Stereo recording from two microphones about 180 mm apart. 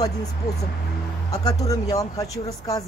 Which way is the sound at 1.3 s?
20° left (ahead or behind).